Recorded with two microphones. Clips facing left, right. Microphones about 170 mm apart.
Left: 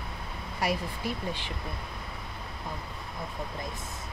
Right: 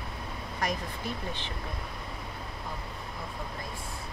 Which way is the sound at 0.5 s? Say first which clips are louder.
Left 3 dB; 10° left (ahead or behind).